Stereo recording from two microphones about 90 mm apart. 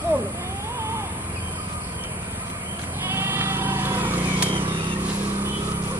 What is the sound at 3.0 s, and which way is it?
Vehicle, 25° right (ahead or behind).